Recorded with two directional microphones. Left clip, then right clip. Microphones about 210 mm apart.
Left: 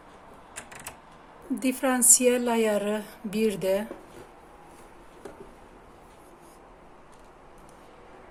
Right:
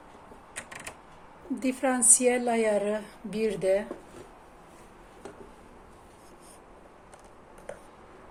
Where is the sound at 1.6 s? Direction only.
15° left (ahead or behind).